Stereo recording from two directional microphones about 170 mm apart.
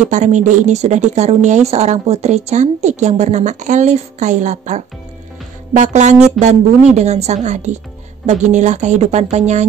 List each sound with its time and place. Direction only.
0.0 s a woman's voice: 45° right (ahead or behind)